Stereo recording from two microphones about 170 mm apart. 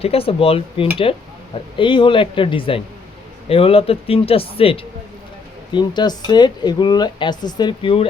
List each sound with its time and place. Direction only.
0.0 s speech: 35° left (ahead or behind)